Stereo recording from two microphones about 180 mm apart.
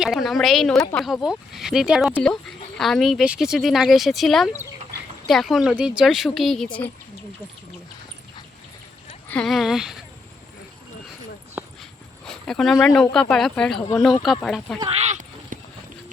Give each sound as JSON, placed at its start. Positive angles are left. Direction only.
{"t": 0.0, "sound": "speech", "side_deg": 0}
{"t": 9.3, "sound": "speech", "side_deg": 0}
{"t": 11.8, "sound": "dog", "side_deg": 5}
{"t": 12.8, "sound": "speech", "side_deg": 5}
{"t": 14.8, "sound": "a sound", "side_deg": -35}